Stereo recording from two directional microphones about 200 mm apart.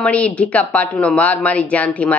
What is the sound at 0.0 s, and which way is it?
A woman's voice, 5° left (ahead or behind).